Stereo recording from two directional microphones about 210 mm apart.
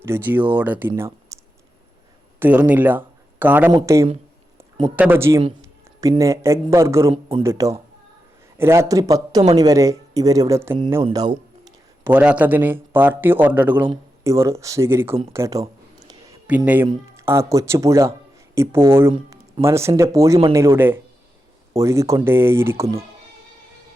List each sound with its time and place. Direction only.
0.0 s speech: 10° right (ahead or behind)
1.3 s clicking: 15° right (ahead or behind)
2.4 s speech: 5° right (ahead or behind)
7.1 s speech: 25° right (ahead or behind)
7.4 s speech: 15° right (ahead or behind)
11.0 s a sound: 20° right (ahead or behind)
12.1 s speech: 5° right (ahead or behind)
13.8 s speech: 20° right (ahead or behind)
15.3 s a sound: 15° right (ahead or behind)
16.6 s speech: 10° right (ahead or behind)
19.1 s music: 25° right (ahead or behind)
19.6 s speech: 15° right (ahead or behind)